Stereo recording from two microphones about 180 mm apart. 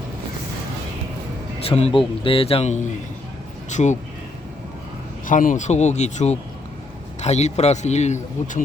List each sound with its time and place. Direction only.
1.8 s a man's voice: 30° left (ahead or behind)
5.2 s a man's voice: 45° left (ahead or behind)